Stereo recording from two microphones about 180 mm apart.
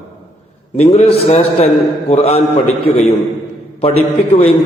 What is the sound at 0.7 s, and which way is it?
Mantra, 40° left (ahead or behind).